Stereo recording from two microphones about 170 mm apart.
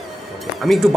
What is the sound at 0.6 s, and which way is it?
Speech, centre (ahead or behind).